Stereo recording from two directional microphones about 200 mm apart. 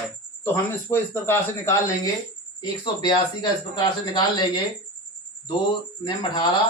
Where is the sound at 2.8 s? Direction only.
20° left (ahead or behind).